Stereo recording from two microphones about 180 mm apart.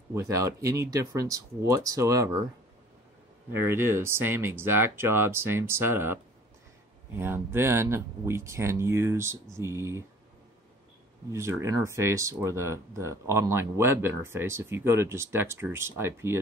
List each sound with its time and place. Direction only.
0.1 s speech: 15° right (ahead or behind)
3.6 s speech: 15° right (ahead or behind)
7.2 s speech: 10° right (ahead or behind)
11.3 s speech: 15° right (ahead or behind)